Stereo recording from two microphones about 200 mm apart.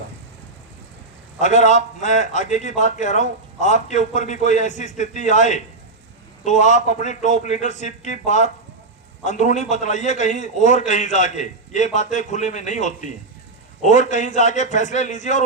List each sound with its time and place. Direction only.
1.4 s a man's voice: 35° left (ahead or behind)